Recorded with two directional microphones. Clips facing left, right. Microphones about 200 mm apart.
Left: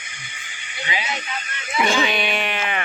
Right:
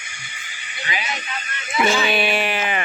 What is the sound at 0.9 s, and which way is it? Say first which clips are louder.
Speech: left 1 dB; 25° left (ahead or behind).